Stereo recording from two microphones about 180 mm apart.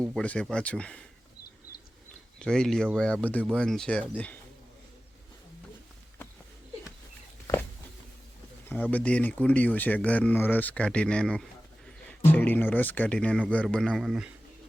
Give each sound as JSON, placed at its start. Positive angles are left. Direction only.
{"t": 0.0, "sound": "speech", "side_deg": 5}
{"t": 2.4, "sound": "speech", "side_deg": 5}
{"t": 7.5, "sound": "a sound", "side_deg": 20}
{"t": 8.7, "sound": "speech", "side_deg": 10}